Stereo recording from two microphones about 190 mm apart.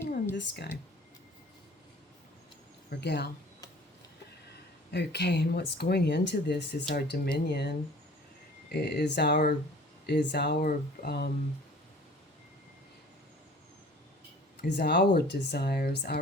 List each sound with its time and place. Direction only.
0.3 s speech: 60° left (ahead or behind)
3.0 s speech: 60° left (ahead or behind)
4.9 s speech: 60° left (ahead or behind)
14.6 s speech: 55° left (ahead or behind)